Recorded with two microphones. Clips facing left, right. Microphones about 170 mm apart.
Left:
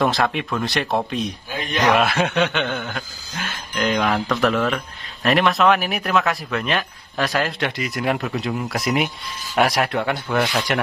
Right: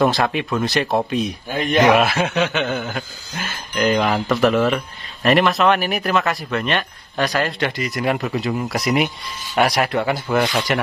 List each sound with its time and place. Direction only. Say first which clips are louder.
0.0 s chuckle: right 2 dB; centre (ahead or behind)
1.6 s a man's voice: right 7 dB; 50° right (ahead or behind)
2.0 s chuckle: right 1 dB; centre (ahead or behind)